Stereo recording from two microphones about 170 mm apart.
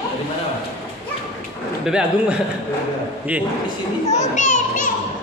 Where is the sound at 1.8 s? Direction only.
5° right (ahead or behind).